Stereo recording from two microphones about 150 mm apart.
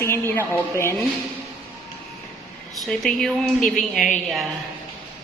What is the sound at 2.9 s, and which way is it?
A woman's voice, centre (ahead or behind).